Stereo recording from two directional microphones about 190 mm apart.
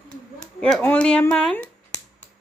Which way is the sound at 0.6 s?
10° left (ahead or behind).